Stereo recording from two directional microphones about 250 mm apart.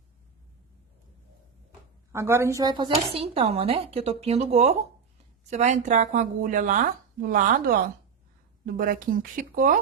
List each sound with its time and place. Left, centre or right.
2.1 s speech: centre; by 9.8 s right